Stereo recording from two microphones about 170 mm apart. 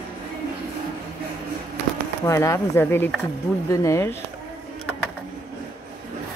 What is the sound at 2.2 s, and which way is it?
Speech, 20° left (ahead or behind).